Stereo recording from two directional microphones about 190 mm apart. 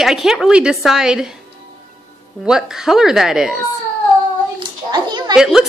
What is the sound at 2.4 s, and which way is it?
Speech, 5° right (ahead or behind).